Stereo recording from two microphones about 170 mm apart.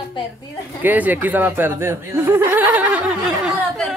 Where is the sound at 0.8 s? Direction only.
10° right (ahead or behind).